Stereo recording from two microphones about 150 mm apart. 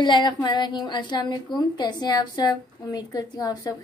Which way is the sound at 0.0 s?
30° left (ahead or behind).